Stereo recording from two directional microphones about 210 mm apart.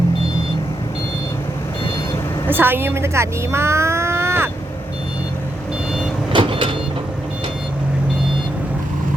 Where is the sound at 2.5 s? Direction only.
10° right (ahead or behind).